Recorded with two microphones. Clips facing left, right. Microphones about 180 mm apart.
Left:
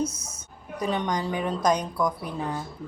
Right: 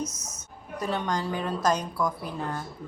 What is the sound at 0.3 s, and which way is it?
A woman's voice, 15° left (ahead or behind).